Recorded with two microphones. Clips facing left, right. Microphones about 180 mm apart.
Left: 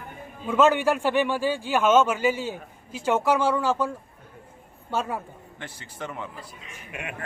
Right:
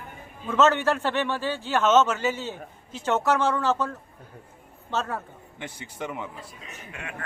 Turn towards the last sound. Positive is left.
turn(degrees=20)  # may be behind; listen again after turning